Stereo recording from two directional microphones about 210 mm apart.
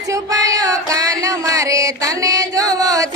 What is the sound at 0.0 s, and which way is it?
Music, 15° right (ahead or behind).